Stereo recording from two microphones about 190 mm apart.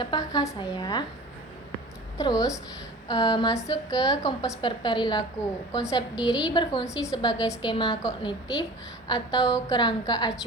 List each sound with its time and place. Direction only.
0.0 s a woman's voice: 20° left (ahead or behind)
2.1 s a woman's voice: 20° left (ahead or behind)